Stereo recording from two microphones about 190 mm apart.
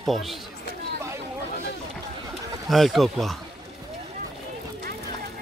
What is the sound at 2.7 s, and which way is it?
Speech, centre (ahead or behind).